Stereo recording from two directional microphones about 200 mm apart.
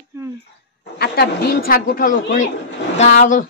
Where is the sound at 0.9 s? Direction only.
55° left (ahead or behind).